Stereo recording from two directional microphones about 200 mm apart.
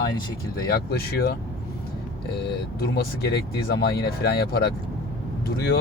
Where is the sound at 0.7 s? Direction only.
50° left (ahead or behind).